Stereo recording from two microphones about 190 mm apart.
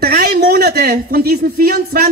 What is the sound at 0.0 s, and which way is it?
Speech, 50° right (ahead or behind).